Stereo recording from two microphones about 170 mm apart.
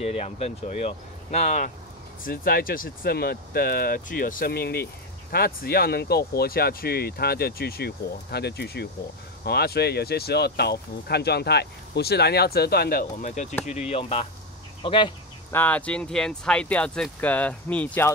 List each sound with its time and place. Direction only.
0.0 s speech: 35° left (ahead or behind)
2.2 s speech: 60° left (ahead or behind)
13.2 s speech: 45° left (ahead or behind); by 15.1 s 30° left (ahead or behind)
15.5 s speech: 10° left (ahead or behind)